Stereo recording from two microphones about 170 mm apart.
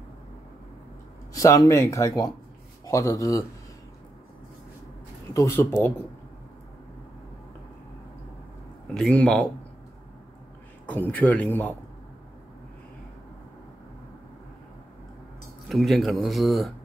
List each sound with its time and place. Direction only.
1.3 s speech: 20° left (ahead or behind)
5.3 s speech: 15° left (ahead or behind)
8.8 s speech: 5° left (ahead or behind)
10.9 s speech: 10° left (ahead or behind)
15.7 s speech: centre (ahead or behind)